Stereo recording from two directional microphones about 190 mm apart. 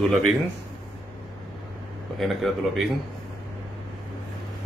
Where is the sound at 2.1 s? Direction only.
Centre (ahead or behind).